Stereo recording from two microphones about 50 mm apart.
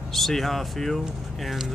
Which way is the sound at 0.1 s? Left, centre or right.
Centre.